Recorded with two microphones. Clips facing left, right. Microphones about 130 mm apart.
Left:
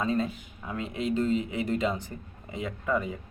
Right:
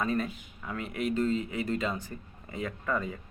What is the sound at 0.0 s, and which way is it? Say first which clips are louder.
Speech: left 2 dB; 20° left (ahead or behind).